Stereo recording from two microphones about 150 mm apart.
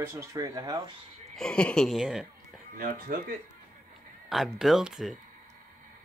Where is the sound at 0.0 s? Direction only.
20° right (ahead or behind).